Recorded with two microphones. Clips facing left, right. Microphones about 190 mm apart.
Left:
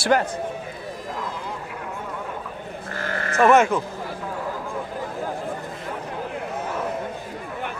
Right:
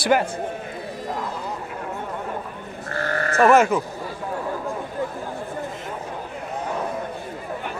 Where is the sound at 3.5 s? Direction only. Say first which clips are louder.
Even; centre (ahead or behind).